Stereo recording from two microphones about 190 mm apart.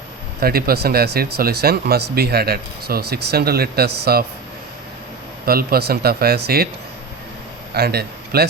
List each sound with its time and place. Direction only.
0.3 s speech: 55° right (ahead or behind)
5.5 s speech: 50° right (ahead or behind)
7.7 s a man's voice: 55° right (ahead or behind)